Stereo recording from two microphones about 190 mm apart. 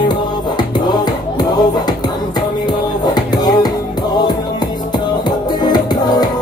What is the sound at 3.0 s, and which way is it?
Music, 20° left (ahead or behind).